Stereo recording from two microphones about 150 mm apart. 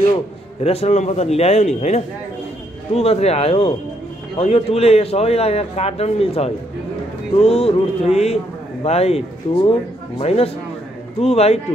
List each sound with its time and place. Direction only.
0.7 s a man's voice: 45° left (ahead or behind)